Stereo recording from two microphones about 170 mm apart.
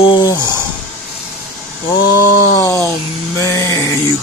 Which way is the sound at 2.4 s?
20° left (ahead or behind).